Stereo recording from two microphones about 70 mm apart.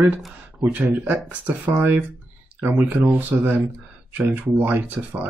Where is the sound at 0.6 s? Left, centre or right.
Right.